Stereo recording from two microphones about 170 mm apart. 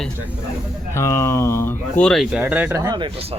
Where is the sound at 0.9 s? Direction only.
15° left (ahead or behind).